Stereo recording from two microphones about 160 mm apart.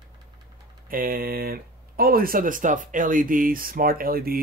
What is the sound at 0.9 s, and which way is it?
Speech, 65° right (ahead or behind).